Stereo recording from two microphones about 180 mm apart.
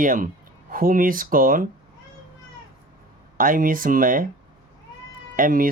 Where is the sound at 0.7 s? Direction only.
50° right (ahead or behind).